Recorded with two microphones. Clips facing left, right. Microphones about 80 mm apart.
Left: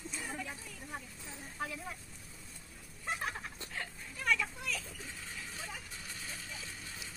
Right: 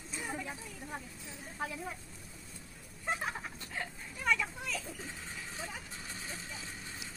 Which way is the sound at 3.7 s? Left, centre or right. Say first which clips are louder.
Right 3 dB; centre.